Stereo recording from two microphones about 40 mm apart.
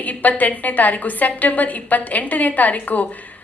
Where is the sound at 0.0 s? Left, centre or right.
Left.